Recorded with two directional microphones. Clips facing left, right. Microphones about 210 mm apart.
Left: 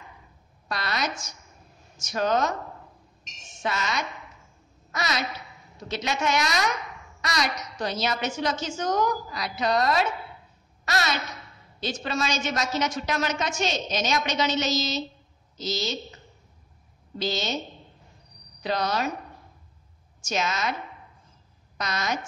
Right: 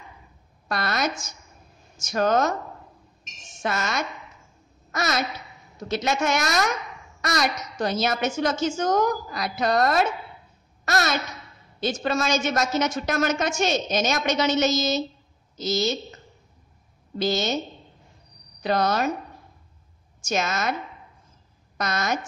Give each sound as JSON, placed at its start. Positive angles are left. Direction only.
{"t": 0.7, "sound": "a woman's voice", "side_deg": -50}
{"t": 3.6, "sound": "a woman's voice", "side_deg": -50}
{"t": 17.2, "sound": "a woman's voice", "side_deg": -50}
{"t": 18.6, "sound": "a woman's voice", "side_deg": -50}
{"t": 20.2, "sound": "a woman's voice", "side_deg": -50}
{"t": 21.7, "sound": "a woman's voice", "side_deg": -50}